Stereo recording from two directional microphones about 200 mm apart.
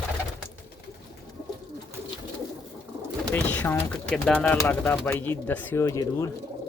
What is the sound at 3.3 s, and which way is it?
Speech, 5° left (ahead or behind).